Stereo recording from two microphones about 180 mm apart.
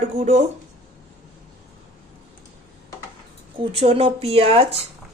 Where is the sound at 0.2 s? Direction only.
40° right (ahead or behind).